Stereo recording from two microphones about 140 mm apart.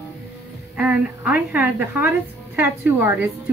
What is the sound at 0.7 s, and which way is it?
A woman's voice, 10° right (ahead or behind).